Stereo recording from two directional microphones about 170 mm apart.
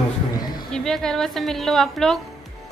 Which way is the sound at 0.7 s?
5° left (ahead or behind).